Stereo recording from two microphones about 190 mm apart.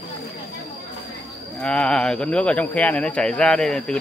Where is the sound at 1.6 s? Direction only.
5° left (ahead or behind).